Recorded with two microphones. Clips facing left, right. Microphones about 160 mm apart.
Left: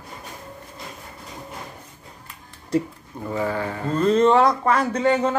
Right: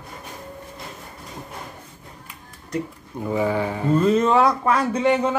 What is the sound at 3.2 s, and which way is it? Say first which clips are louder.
Speech: right 3 dB; 15° right (ahead or behind).